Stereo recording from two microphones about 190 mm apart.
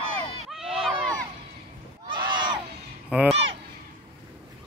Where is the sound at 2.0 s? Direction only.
25° right (ahead or behind).